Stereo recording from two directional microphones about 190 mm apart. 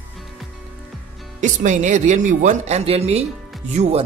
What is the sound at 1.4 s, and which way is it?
Speech, 40° right (ahead or behind).